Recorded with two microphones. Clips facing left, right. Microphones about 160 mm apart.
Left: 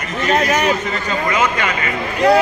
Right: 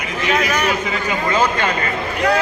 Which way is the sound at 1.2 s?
30° right (ahead or behind).